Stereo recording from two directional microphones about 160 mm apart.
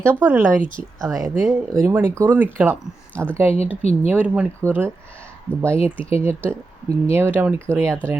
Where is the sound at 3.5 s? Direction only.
40° left (ahead or behind).